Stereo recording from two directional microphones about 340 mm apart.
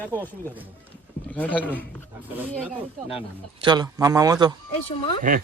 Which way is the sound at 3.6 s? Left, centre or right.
Centre.